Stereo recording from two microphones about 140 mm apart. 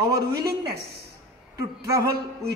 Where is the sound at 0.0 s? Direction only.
25° right (ahead or behind).